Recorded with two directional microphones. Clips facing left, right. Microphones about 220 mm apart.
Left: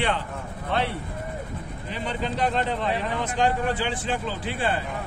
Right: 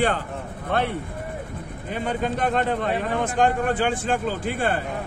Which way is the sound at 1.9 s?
50° right (ahead or behind).